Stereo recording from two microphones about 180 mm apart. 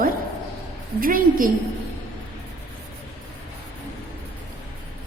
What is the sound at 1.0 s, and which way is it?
Speech, 50° right (ahead or behind).